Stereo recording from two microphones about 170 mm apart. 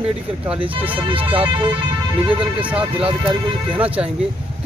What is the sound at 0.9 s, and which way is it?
Speech, 30° right (ahead or behind).